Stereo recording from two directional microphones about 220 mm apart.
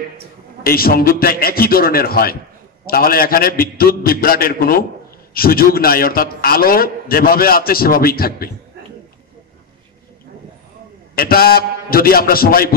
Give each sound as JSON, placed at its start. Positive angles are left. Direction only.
{"t": 0.7, "sound": "a man's voice", "side_deg": 45}
{"t": 11.1, "sound": "a man's voice", "side_deg": 45}